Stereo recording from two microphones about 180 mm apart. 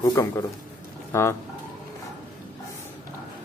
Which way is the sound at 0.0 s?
20° left (ahead or behind).